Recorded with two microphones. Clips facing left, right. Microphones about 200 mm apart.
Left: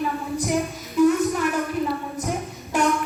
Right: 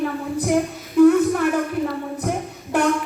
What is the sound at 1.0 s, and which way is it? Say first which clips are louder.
Child singing: right 5 dB; 55° right (ahead or behind).